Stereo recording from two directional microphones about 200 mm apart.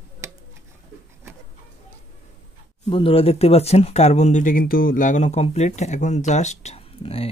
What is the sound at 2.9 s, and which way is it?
Speech, 25° left (ahead or behind).